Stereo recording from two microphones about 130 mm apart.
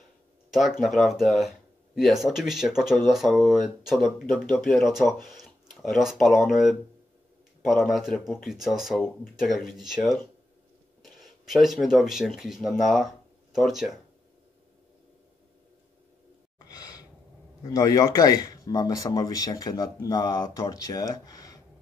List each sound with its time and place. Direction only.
0.5 s speech: centre (ahead or behind)
16.6 s gasp: 30° left (ahead or behind)
17.7 s speech: 25° left (ahead or behind)